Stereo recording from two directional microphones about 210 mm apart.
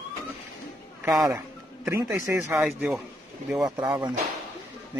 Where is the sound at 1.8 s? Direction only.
15° right (ahead or behind).